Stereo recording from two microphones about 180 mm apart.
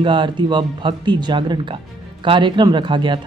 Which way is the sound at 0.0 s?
25° right (ahead or behind).